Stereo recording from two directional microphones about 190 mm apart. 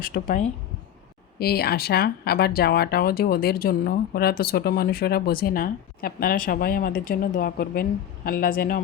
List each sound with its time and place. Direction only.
0.0 s speech: 50° left (ahead or behind)
1.4 s speech: 55° left (ahead or behind)